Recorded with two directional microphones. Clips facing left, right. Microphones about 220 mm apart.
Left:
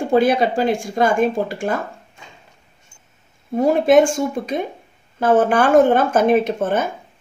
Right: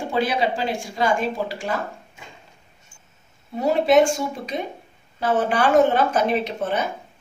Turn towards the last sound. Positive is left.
turn(degrees=50)  # may be behind; listen again after turning